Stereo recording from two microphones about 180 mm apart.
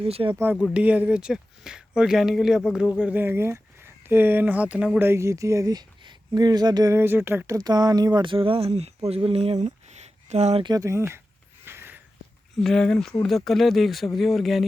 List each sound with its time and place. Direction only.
0.0 s speech: 30° right (ahead or behind)
0.3 s speech: 10° right (ahead or behind); by 10.7 s 35° right (ahead or behind)
10.7 s speech: 15° right (ahead or behind)
11.6 s a sound: 10° right (ahead or behind)
12.5 s speech: 5° left (ahead or behind)